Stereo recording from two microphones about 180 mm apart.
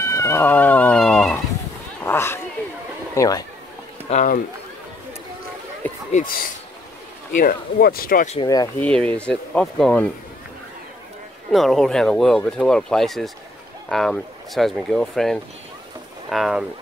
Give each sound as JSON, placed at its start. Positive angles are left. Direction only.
{"t": 0.0, "sound": "a sound", "side_deg": 15}
{"t": 2.0, "sound": "cat", "side_deg": 10}
{"t": 3.2, "sound": "speech", "side_deg": 20}
{"t": 4.1, "sound": "speech", "side_deg": 45}
{"t": 6.1, "sound": "speech", "side_deg": 50}
{"t": 8.4, "sound": "speech", "side_deg": 20}
{"t": 8.7, "sound": "speech", "side_deg": 5}
{"t": 11.5, "sound": "speech", "side_deg": 0}